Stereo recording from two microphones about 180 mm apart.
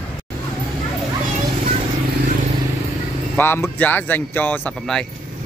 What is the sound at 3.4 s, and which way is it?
Speech, 10° left (ahead or behind).